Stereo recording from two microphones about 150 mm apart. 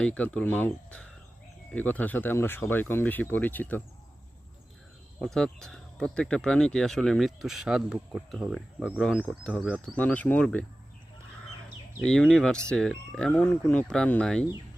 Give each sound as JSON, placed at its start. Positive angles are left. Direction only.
{"t": 0.0, "sound": "speech", "side_deg": 5}
{"t": 5.2, "sound": "speech", "side_deg": 5}
{"t": 9.8, "sound": "speech", "side_deg": 10}
{"t": 12.0, "sound": "speech", "side_deg": 5}